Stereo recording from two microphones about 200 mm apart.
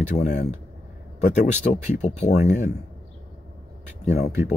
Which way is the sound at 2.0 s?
35° left (ahead or behind).